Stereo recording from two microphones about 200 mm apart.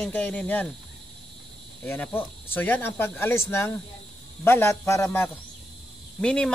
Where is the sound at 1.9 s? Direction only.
10° left (ahead or behind).